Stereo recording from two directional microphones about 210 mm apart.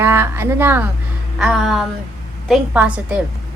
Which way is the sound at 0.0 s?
10° right (ahead or behind).